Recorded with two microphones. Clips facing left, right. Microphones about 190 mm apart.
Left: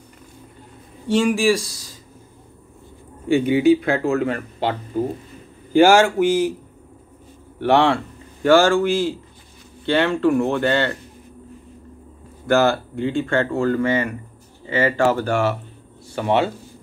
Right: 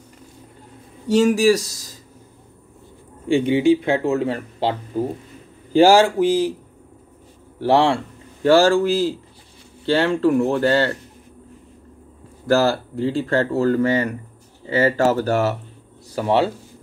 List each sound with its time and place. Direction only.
1.0 s speech: 40° right (ahead or behind)
3.3 s speech: 30° right (ahead or behind)
7.6 s speech: 30° right (ahead or behind)
12.4 s speech: 35° right (ahead or behind)